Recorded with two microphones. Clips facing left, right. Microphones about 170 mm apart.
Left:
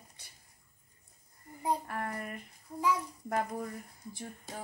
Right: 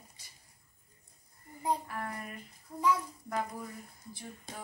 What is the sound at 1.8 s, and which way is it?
Child singing, 45° left (ahead or behind).